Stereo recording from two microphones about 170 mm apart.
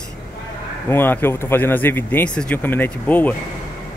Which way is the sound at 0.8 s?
10° left (ahead or behind).